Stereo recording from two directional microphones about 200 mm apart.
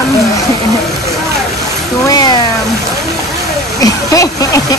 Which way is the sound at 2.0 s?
20° left (ahead or behind).